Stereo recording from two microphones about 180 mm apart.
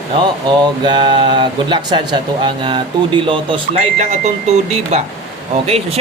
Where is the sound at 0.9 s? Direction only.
25° right (ahead or behind).